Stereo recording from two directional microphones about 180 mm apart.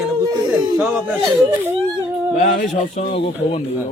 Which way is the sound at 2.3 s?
45° left (ahead or behind).